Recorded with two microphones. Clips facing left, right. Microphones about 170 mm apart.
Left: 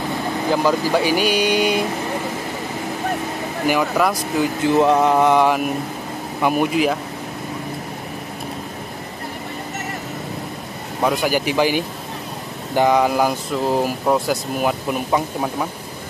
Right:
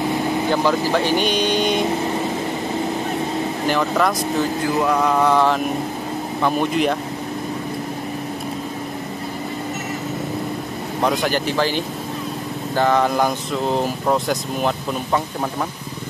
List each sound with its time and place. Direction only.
0.9 s speech: 10° left (ahead or behind)
3.6 s speech: 10° left (ahead or behind)
4.7 s mantra: 25° left (ahead or behind)
6.4 s speech: 10° left (ahead or behind)
11.0 s speech: 5° left (ahead or behind)